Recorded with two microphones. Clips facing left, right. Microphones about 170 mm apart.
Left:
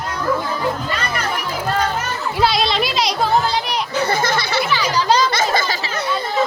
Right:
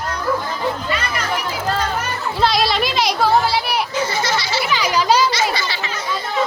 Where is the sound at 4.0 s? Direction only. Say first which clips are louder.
Left 2 dB; 55° left (ahead or behind).